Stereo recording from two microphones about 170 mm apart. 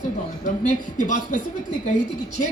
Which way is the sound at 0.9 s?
45° left (ahead or behind).